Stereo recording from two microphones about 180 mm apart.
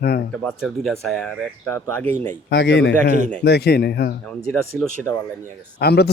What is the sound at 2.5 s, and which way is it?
Speech, 80° left.